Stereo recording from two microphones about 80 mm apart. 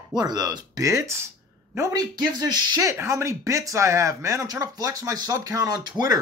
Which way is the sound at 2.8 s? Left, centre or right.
Right.